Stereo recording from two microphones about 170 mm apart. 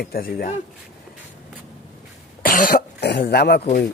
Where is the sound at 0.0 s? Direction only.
60° left (ahead or behind).